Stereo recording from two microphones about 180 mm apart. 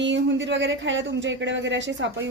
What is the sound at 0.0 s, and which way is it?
Speech, 90° right.